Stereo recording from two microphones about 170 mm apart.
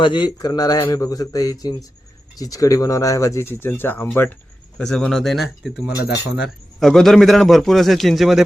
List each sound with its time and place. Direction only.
0.0 s a man's voice: 25° left (ahead or behind); by 8.4 s centre (ahead or behind)